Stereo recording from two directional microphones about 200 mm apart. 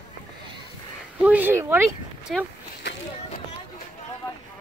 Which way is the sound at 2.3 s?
Centre (ahead or behind).